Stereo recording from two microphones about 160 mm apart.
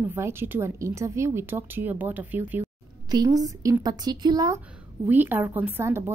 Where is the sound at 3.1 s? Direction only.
25° right (ahead or behind).